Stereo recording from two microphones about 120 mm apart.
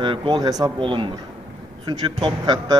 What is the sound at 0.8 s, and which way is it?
Speech, 45° right (ahead or behind).